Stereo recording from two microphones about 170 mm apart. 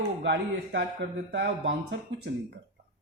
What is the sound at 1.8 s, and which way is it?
Speech, 75° right (ahead or behind).